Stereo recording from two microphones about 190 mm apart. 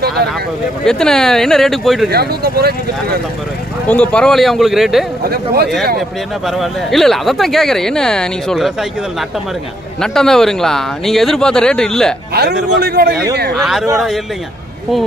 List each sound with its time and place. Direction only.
0.8 s speech: 5° left (ahead or behind)
2.0 s speech: 55° right (ahead or behind)
3.9 s speech: 5° left (ahead or behind)
5.2 s speech: 55° right (ahead or behind)
5.9 s speech: centre (ahead or behind)
9.9 s speech: 5° left (ahead or behind)
12.8 s speech: 55° right (ahead or behind)
13.6 s speech: centre (ahead or behind)